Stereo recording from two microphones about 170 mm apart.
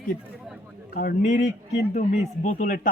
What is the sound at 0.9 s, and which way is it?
Speech, 65° left (ahead or behind).